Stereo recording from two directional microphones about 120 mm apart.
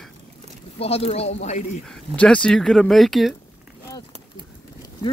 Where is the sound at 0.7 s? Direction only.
60° left (ahead or behind).